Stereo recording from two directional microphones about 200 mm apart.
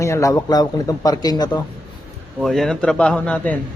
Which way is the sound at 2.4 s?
Centre (ahead or behind).